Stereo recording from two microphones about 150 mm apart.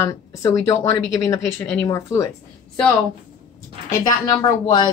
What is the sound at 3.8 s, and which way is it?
Speech, 25° left (ahead or behind).